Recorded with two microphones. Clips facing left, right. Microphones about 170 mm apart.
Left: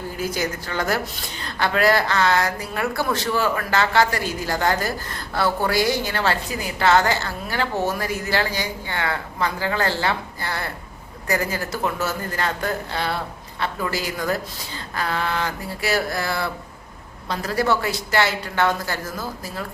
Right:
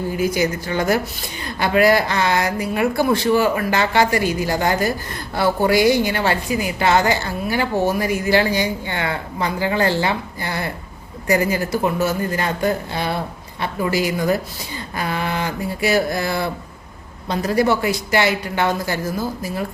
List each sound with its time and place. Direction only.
0.2 s speech: 15° right (ahead or behind)